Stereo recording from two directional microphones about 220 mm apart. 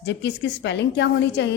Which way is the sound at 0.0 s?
50° left (ahead or behind).